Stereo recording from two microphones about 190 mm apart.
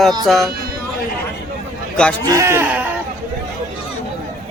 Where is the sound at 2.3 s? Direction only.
15° right (ahead or behind).